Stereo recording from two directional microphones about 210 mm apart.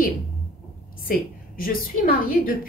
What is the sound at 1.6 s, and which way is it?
Speech, 45° left (ahead or behind).